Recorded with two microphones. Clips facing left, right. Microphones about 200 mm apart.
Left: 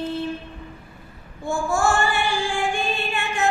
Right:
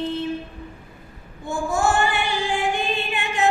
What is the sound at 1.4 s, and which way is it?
Child singing, 20° right (ahead or behind).